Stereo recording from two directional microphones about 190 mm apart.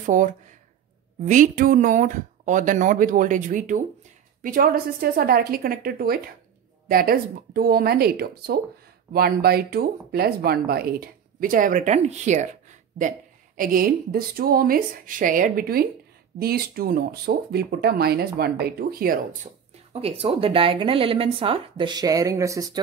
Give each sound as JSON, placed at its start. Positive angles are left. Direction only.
{"t": 0.0, "sound": "speech", "side_deg": -40}
{"t": 13.6, "sound": "speech", "side_deg": -50}
{"t": 19.9, "sound": "speech", "side_deg": -30}